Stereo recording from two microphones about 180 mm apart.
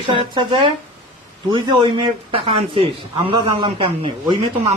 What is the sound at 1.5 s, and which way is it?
Speech, 25° right (ahead or behind).